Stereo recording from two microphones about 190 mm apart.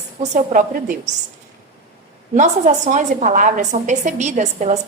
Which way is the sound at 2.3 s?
40° right (ahead or behind).